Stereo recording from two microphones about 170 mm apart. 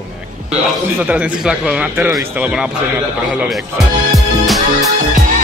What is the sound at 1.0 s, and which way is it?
Speech, 5° right (ahead or behind).